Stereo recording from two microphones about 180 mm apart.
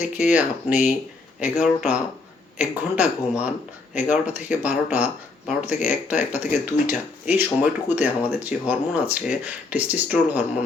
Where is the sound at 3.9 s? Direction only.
40° left (ahead or behind).